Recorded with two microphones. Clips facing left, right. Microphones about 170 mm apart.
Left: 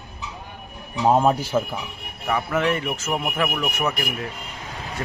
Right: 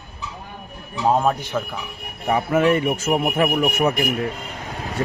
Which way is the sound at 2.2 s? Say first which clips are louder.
Right 4 dB; 25° right (ahead or behind).